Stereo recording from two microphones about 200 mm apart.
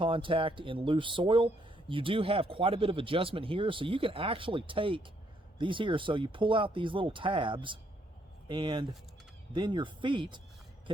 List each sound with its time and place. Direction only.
0.0 s speech: 25° right (ahead or behind)